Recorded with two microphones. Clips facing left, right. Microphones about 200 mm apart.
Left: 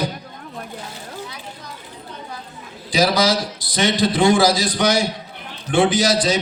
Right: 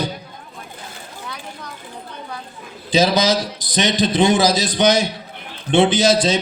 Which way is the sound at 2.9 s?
20° right (ahead or behind).